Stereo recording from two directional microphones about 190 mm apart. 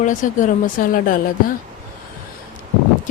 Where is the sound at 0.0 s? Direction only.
45° left (ahead or behind).